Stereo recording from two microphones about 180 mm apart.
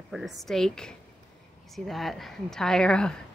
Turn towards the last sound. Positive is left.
turn(degrees=5)  # may be behind; listen again after turning